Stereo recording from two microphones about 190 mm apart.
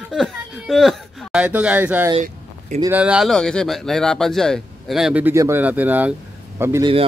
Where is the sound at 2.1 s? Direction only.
35° right (ahead or behind).